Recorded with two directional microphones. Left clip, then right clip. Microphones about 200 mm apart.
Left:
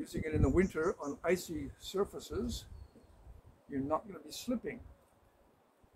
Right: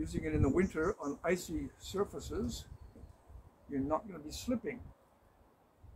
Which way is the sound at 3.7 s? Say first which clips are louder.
Even; 15° left (ahead or behind).